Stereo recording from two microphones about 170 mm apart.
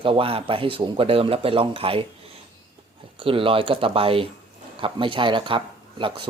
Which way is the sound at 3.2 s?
30° right (ahead or behind).